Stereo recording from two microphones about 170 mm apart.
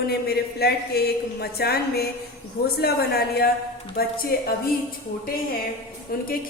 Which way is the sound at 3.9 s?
65° left (ahead or behind).